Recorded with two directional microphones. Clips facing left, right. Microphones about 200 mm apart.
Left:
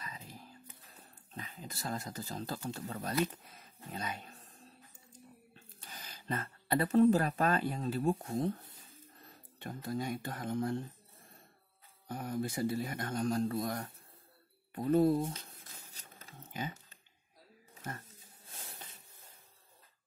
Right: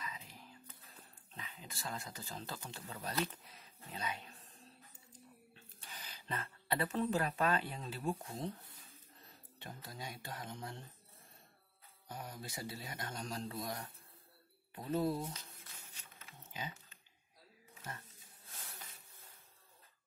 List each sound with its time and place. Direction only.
0.0 s music: 40° left (ahead or behind)
1.3 s speech: 45° left (ahead or behind)
5.5 s speech: 45° left (ahead or behind)
9.6 s speech: 50° left (ahead or behind)
12.1 s speech: 55° left (ahead or behind)
15.9 s patter: 40° left (ahead or behind)